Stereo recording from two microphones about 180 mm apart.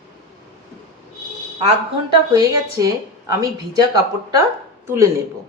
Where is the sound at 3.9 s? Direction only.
20° right (ahead or behind).